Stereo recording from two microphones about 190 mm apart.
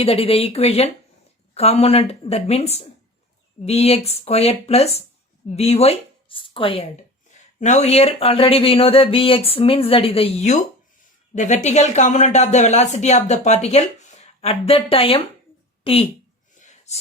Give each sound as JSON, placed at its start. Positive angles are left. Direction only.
{"t": 0.0, "sound": "a woman's voice", "side_deg": 30}
{"t": 7.3, "sound": "a woman's voice", "side_deg": 40}
{"t": 16.6, "sound": "a sound", "side_deg": 40}